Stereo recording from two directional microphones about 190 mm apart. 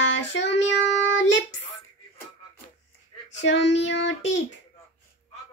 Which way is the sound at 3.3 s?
75° left (ahead or behind).